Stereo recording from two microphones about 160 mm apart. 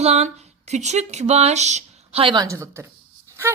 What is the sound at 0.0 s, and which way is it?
A woman's voice, 40° right (ahead or behind).